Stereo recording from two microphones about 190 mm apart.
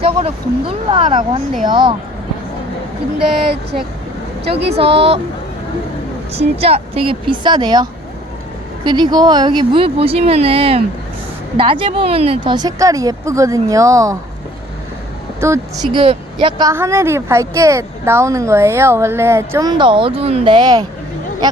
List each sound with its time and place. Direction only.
0.0 s a woman's voice: 30° right (ahead or behind)
4.7 s speech: 30° right (ahead or behind)
6.3 s a woman's voice: 35° right (ahead or behind); by 14.2 s 15° right (ahead or behind)
15.4 s speech: 15° right (ahead or behind)
15.9 s speech: 25° right (ahead or behind)